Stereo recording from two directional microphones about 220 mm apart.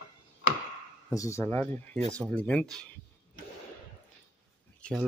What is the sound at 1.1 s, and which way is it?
Speech, 15° left (ahead or behind).